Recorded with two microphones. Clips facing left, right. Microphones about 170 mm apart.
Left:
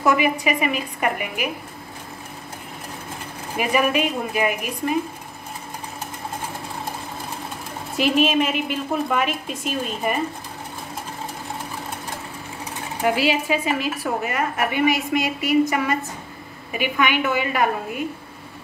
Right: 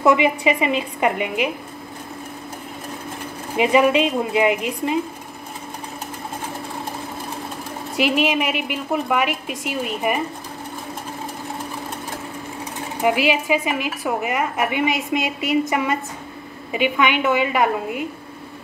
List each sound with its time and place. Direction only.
0.0 s a woman's voice: 25° right (ahead or behind)
3.5 s a woman's voice: 20° right (ahead or behind)
8.0 s a woman's voice: 15° right (ahead or behind)
13.0 s a woman's voice: 15° right (ahead or behind)